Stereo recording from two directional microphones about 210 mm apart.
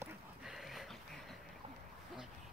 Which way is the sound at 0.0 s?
Centre (ahead or behind).